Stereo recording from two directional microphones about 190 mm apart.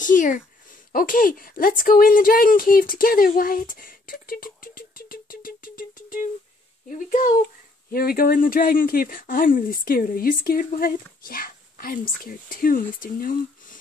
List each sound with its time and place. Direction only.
0.0 s speech: 40° left (ahead or behind)